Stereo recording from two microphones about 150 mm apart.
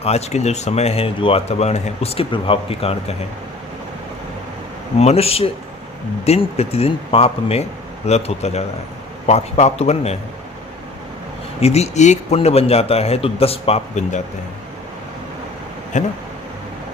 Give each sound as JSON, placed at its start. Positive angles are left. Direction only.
{"t": 0.0, "sound": "speech", "side_deg": 45}
{"t": 4.9, "sound": "speech", "side_deg": 45}
{"t": 11.6, "sound": "speech", "side_deg": 45}
{"t": 15.9, "sound": "speech", "side_deg": 55}